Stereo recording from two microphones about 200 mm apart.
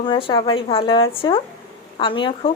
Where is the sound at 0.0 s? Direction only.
25° left (ahead or behind).